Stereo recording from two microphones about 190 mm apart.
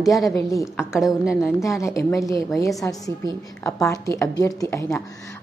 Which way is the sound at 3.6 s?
15° left (ahead or behind).